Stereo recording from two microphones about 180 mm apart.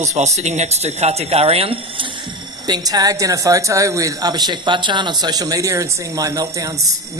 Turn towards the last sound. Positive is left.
turn(degrees=-20)  # may be behind; listen again after turning